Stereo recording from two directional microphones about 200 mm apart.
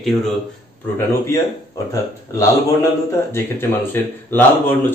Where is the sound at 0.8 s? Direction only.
15° left (ahead or behind).